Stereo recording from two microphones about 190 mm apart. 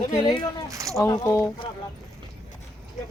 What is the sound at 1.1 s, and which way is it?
Speech, 15° left (ahead or behind).